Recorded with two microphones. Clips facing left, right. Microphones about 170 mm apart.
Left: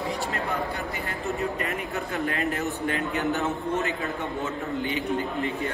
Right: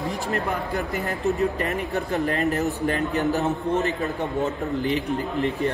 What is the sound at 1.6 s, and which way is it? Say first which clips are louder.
Speech: right 4 dB; 40° right (ahead or behind).